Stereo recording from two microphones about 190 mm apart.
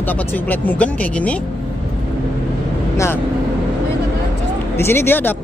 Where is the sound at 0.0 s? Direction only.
10° left (ahead or behind).